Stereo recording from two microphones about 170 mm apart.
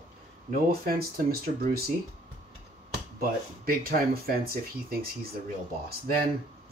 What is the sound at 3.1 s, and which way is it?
Speech, 60° right (ahead or behind).